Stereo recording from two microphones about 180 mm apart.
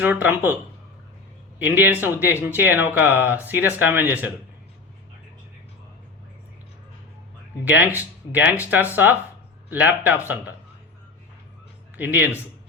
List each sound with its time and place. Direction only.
0.0 s speech: 10° right (ahead or behind)
7.6 s speech: 10° right (ahead or behind)
11.9 s speech: 10° right (ahead or behind)